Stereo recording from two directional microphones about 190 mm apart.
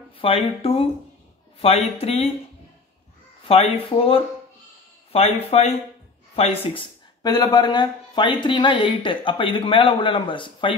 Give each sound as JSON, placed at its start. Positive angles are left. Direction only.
{"t": 0.2, "sound": "speech", "side_deg": 30}
{"t": 3.4, "sound": "speech", "side_deg": 30}